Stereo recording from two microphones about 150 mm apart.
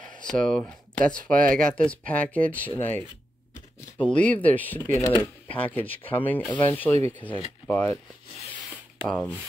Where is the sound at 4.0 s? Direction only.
10° left (ahead or behind).